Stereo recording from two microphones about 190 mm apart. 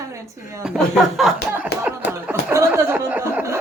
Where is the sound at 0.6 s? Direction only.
Centre (ahead or behind).